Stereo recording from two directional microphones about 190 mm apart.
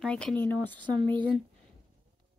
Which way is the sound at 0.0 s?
5° left (ahead or behind).